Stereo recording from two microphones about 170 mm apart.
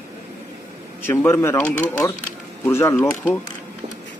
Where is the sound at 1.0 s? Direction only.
10° left (ahead or behind).